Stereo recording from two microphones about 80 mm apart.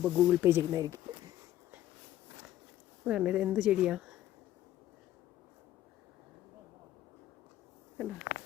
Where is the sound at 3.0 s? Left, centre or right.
Centre.